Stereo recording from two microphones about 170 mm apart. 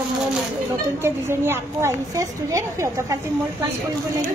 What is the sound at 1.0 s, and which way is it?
A woman's voice, 15° right (ahead or behind).